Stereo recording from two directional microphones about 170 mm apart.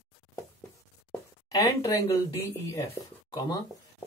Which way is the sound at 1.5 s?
20° left (ahead or behind).